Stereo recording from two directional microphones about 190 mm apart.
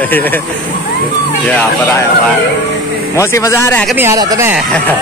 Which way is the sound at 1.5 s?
5° left (ahead or behind).